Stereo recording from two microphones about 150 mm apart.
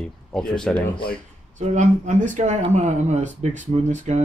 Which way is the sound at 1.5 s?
50° right (ahead or behind).